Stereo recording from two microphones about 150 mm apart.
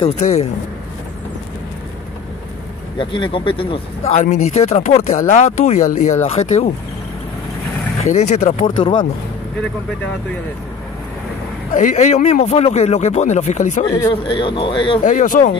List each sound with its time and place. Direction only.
0.0 s speech: 45° left (ahead or behind)
3.0 s speech: 35° left (ahead or behind)
8.0 s speech: 50° left (ahead or behind)
11.7 s speech: 50° left (ahead or behind)
14.2 s speech: 35° left (ahead or behind)
15.0 s speech: 65° left (ahead or behind)